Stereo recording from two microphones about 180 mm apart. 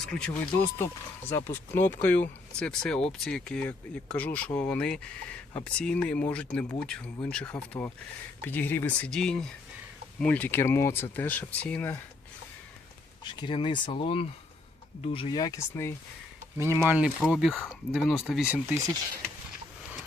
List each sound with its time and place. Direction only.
0.0 s speech: 5° left (ahead or behind)
13.2 s speech: 25° left (ahead or behind)
16.6 s speech: 15° right (ahead or behind)